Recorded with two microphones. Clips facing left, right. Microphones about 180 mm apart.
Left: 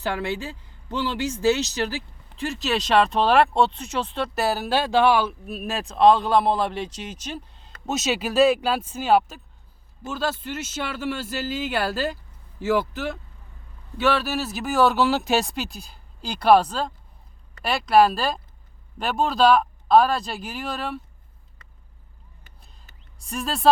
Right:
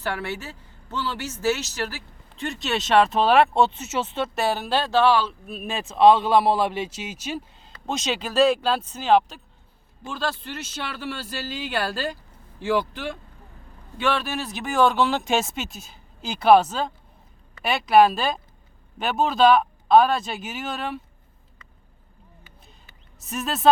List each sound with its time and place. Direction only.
0.0 s speech: 15° left (ahead or behind)
2.4 s speech: centre (ahead or behind)
23.2 s speech: 5° right (ahead or behind)